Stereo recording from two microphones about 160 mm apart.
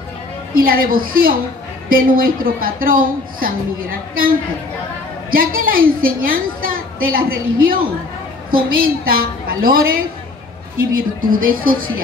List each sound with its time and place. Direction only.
0.6 s a woman's voice: 65° right (ahead or behind)
5.3 s a woman's voice: 65° right (ahead or behind)